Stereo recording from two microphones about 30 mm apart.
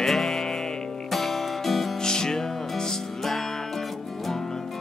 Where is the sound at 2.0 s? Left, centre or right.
Left.